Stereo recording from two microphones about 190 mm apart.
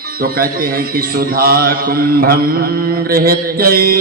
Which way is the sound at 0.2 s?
50° right (ahead or behind).